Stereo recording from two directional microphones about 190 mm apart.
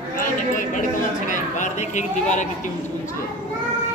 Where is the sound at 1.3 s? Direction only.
40° left (ahead or behind).